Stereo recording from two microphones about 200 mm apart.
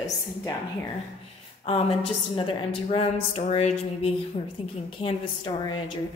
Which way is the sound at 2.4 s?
25° left (ahead or behind).